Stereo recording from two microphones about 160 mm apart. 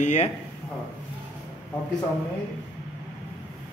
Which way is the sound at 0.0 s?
50° left (ahead or behind).